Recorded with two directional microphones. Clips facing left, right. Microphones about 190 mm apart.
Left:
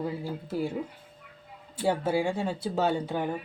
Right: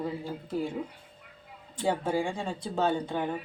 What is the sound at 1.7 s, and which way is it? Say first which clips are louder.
Speech: left 2 dB; 10° left (ahead or behind).